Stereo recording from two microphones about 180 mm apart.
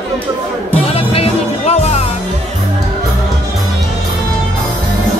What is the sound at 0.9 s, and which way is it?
Music, 35° left (ahead or behind).